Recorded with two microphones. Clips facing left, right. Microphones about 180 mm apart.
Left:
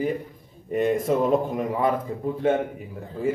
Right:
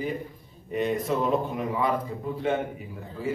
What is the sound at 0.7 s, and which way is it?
Speech, 50° left (ahead or behind).